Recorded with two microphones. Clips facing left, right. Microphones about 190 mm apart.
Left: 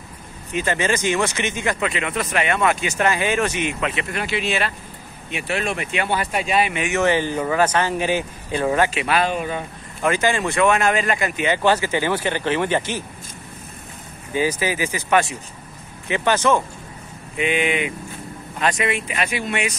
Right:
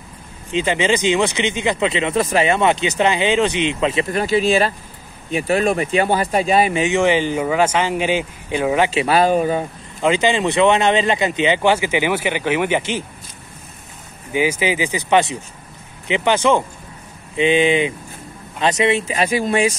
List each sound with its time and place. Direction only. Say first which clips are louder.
0.6 s speech: right 4 dB; 15° right (ahead or behind)
3.8 s speech: right 6 dB; 30° right (ahead or behind)
6.8 s speech: right 3 dB; 15° right (ahead or behind)
8.9 s speech: right 6 dB; 35° right (ahead or behind)
10.0 s speech: right 3 dB; 15° right (ahead or behind)
14.3 s speech: right 3 dB; 15° right (ahead or behind)
17.4 s speech: right 6 dB; 30° right (ahead or behind)